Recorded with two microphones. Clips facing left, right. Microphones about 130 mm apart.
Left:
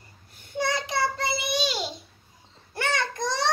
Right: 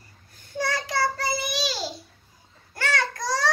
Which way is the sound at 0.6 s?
20° left (ahead or behind).